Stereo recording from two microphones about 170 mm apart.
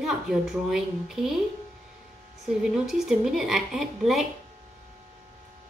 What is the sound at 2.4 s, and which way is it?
A woman's voice, centre (ahead or behind).